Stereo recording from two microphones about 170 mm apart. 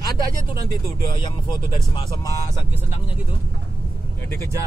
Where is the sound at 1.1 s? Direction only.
30° left (ahead or behind).